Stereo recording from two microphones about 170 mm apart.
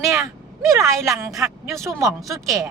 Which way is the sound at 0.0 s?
15° right (ahead or behind).